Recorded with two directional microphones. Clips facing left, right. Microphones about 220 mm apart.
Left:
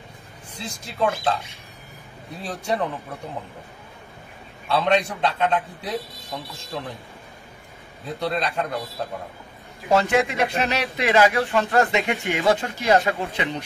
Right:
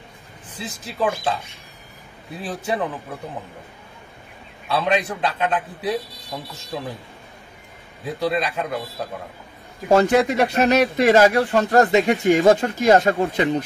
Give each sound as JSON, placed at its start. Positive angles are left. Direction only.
{"t": 0.7, "sound": "speech", "side_deg": -5}
{"t": 2.4, "sound": "a man's voice", "side_deg": -5}
{"t": 4.6, "sound": "a man's voice", "side_deg": -5}
{"t": 8.0, "sound": "a man's voice", "side_deg": -5}
{"t": 9.8, "sound": "speech", "side_deg": -40}